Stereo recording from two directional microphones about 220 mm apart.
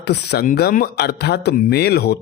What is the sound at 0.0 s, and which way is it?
Speech, 50° left (ahead or behind).